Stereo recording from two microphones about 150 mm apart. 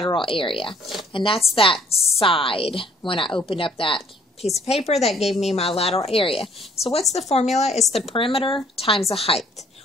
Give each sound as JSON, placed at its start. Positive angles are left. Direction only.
{"t": 0.0, "sound": "a woman's voice", "side_deg": 35}